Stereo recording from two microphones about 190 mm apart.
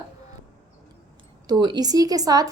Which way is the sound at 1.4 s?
20° right (ahead or behind).